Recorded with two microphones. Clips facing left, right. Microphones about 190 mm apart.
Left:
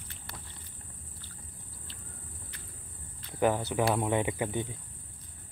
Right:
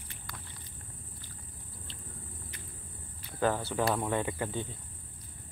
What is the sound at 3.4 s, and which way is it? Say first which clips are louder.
Speech: left 2 dB; 15° left (ahead or behind).